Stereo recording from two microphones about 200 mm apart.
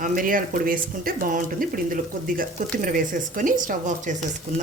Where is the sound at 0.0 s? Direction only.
45° right (ahead or behind).